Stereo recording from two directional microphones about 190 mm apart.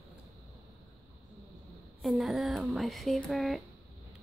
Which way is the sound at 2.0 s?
Centre (ahead or behind).